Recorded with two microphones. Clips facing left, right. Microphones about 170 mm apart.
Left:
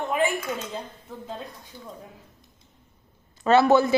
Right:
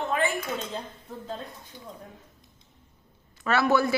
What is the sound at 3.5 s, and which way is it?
Speech, 25° left (ahead or behind).